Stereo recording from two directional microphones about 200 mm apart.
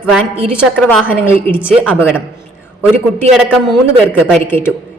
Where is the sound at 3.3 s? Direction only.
5° right (ahead or behind).